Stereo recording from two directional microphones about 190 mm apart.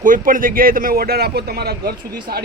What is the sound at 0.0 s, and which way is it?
A man's voice, 45° right (ahead or behind).